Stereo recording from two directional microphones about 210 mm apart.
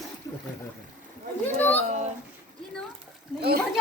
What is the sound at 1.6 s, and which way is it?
Speech, 10° left (ahead or behind).